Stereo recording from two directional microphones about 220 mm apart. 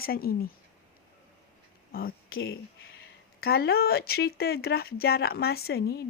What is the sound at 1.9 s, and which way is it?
Speech, 40° left (ahead or behind).